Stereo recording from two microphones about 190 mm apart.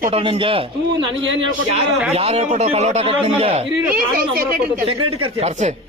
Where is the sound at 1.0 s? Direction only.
75° right (ahead or behind).